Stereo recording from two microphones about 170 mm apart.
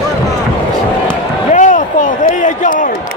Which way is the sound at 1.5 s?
50° left (ahead or behind).